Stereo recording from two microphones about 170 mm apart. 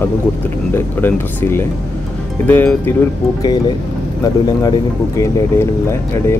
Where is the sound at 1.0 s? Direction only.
15° left (ahead or behind).